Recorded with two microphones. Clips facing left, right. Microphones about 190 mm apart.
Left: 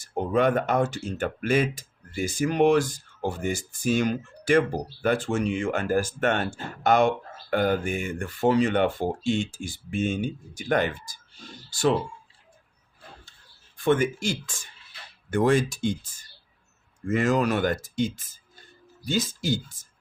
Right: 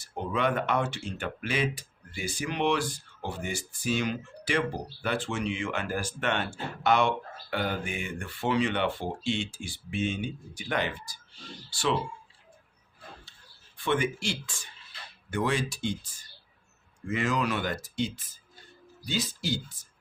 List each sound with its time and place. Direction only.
0.0 s speech: 45° left (ahead or behind)
13.7 s speech: 45° left (ahead or behind)
17.1 s speech: 45° left (ahead or behind)